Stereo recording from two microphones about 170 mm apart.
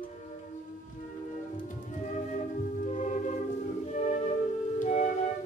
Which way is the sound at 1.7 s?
45° left (ahead or behind).